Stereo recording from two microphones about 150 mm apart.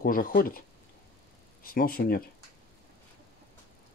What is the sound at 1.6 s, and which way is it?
Speech, 75° left (ahead or behind).